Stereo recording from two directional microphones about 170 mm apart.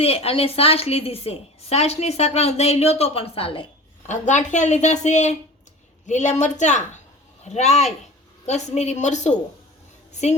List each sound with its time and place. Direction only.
0.0 s a woman's voice: 35° left (ahead or behind)
4.0 s a woman's voice: 45° left (ahead or behind)